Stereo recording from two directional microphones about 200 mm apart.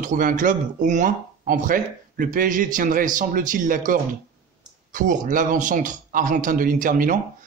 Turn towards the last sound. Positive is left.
turn(degrees=-45)  # may be behind; listen again after turning